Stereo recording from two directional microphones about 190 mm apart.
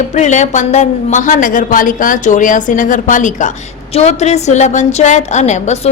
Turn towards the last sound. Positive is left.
turn(degrees=35)  # may be behind; listen again after turning